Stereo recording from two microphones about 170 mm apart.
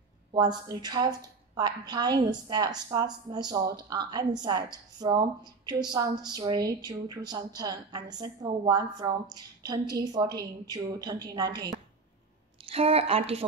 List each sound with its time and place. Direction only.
0.3 s a woman's voice: 25° right (ahead or behind)
12.6 s a woman's voice: 35° right (ahead or behind)